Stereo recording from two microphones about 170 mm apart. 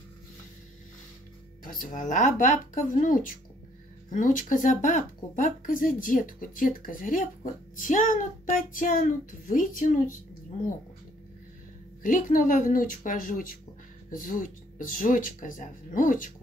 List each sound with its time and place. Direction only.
1.6 s speech: 50° left (ahead or behind)
12.0 s speech: 50° left (ahead or behind)